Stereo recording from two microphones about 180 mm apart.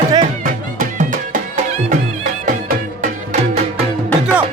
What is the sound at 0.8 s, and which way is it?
Music, 45° right (ahead or behind).